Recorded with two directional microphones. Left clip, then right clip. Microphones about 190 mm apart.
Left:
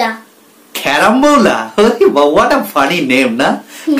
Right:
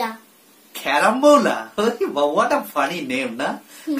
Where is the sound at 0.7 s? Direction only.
15° left (ahead or behind).